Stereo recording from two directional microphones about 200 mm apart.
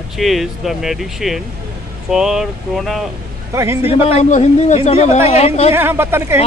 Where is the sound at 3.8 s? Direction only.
30° left (ahead or behind).